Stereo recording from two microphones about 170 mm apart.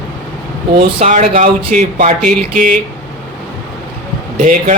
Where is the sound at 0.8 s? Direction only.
45° right (ahead or behind).